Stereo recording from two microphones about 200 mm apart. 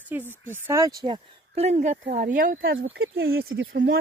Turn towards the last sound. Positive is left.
turn(degrees=-55)  # may be behind; listen again after turning